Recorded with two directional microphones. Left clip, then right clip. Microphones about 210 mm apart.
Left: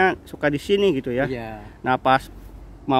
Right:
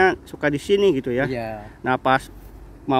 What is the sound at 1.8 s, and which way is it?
Speech, centre (ahead or behind).